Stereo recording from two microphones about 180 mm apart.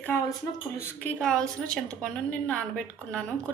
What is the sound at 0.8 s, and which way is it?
A woman's voice, 10° left (ahead or behind).